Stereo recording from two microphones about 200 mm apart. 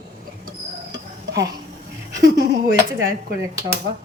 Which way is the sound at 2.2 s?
60° right (ahead or behind).